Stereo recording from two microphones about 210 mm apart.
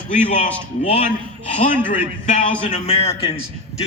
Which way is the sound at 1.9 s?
35° left (ahead or behind).